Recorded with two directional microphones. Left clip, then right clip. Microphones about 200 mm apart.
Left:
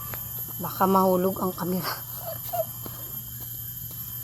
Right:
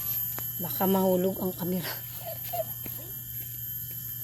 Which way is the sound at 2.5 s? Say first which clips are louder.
Left 4 dB; 35° right (ahead or behind).